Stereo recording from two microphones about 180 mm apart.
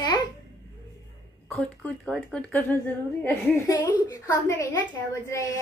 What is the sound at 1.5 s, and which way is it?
Speech, 5° left (ahead or behind).